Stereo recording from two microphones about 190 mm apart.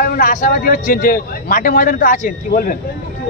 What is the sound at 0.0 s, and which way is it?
A man's voice, 45° left (ahead or behind).